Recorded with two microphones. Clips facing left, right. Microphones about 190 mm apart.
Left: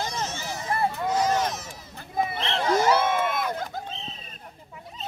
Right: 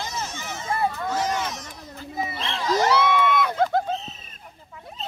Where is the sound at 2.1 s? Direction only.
55° left (ahead or behind).